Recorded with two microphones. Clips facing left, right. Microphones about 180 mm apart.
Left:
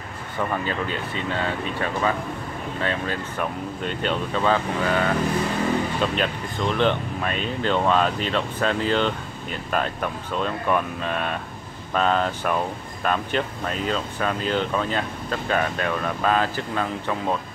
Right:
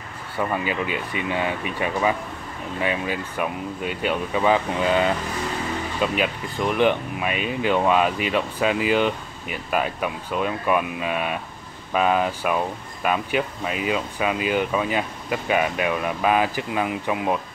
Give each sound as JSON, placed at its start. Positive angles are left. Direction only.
{"t": 0.4, "sound": "speech", "side_deg": -10}